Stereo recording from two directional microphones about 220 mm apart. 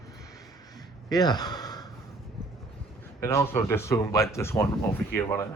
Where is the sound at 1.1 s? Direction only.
20° left (ahead or behind).